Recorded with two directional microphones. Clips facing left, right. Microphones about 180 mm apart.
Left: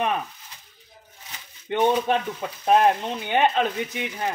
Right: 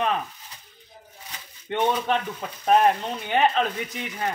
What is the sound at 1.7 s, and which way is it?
A man's voice, 10° left (ahead or behind).